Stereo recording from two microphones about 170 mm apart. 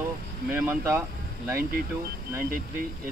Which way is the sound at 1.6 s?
60° right (ahead or behind).